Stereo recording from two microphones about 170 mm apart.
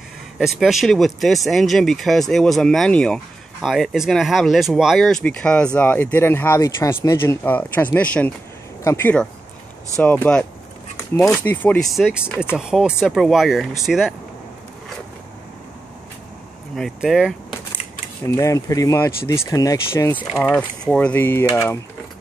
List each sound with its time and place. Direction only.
0.4 s speech: centre (ahead or behind)
11.9 s speech: 5° right (ahead or behind)
16.7 s speech: centre (ahead or behind)
18.2 s speech: 20° left (ahead or behind)
20.4 s speech: 5° left (ahead or behind)